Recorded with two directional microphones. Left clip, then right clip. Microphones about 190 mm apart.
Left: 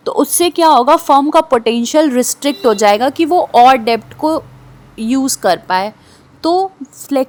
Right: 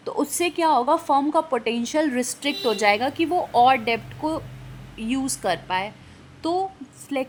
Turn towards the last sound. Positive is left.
turn(degrees=30)  # may be behind; listen again after turning